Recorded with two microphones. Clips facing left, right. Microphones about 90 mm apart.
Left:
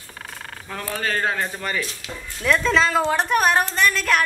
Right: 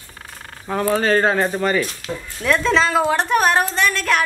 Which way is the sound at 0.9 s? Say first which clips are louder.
Right 6 dB; 35° right (ahead or behind).